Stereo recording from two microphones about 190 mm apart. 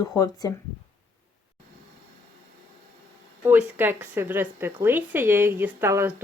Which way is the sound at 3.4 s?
10° right (ahead or behind).